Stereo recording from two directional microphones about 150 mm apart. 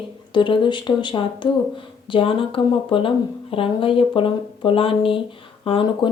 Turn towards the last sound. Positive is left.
turn(degrees=35)  # may be behind; listen again after turning